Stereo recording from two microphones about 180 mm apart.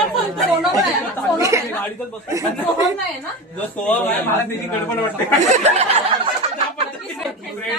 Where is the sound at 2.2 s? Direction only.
15° right (ahead or behind).